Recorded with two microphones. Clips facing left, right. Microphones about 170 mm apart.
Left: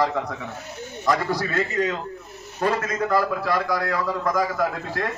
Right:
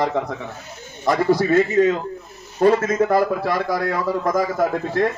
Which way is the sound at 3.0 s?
25° right (ahead or behind).